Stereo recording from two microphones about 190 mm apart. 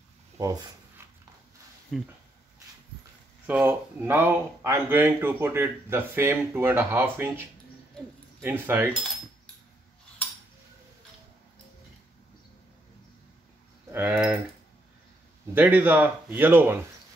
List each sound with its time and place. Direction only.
0.4 s speech: 15° right (ahead or behind)
1.9 s speech: centre (ahead or behind)
3.4 s speech: 10° right (ahead or behind)
13.9 s speech: 10° right (ahead or behind)
15.5 s speech: 10° right (ahead or behind)